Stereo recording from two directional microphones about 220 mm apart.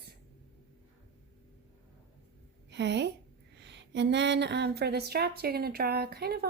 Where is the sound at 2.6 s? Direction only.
55° right (ahead or behind).